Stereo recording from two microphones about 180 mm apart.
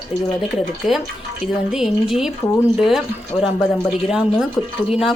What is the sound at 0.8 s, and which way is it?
Speech, 40° left (ahead or behind).